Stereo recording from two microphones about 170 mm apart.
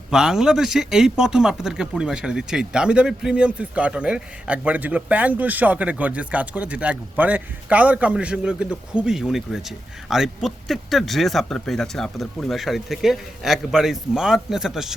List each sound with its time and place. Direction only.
0.1 s speech: 5° right (ahead or behind)